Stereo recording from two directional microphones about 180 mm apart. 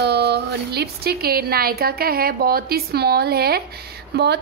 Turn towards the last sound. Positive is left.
turn(degrees=-65)  # may be behind; listen again after turning